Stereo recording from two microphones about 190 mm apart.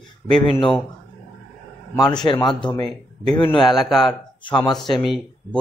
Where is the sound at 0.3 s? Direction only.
25° left (ahead or behind).